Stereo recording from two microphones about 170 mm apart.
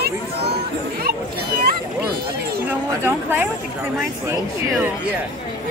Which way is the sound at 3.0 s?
10° right (ahead or behind).